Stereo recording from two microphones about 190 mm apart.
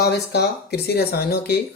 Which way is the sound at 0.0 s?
60° left (ahead or behind).